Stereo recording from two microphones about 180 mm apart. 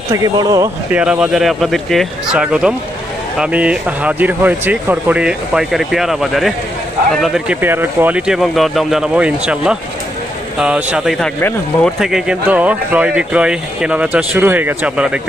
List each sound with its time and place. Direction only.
0.1 s speech: 20° right (ahead or behind)
0.9 s speech: 5° right (ahead or behind)